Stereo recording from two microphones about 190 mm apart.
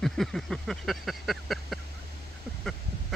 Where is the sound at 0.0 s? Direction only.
Centre (ahead or behind).